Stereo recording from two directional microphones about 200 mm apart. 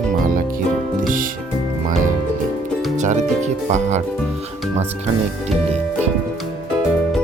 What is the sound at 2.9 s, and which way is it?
Speech, 35° right (ahead or behind).